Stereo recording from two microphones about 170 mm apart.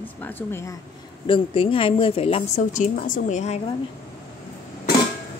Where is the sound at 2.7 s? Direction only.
45° left (ahead or behind).